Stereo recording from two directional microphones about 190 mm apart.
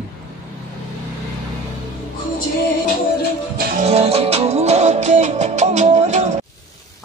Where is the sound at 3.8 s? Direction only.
35° right (ahead or behind).